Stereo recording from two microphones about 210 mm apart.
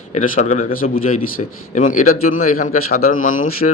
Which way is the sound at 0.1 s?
35° left (ahead or behind).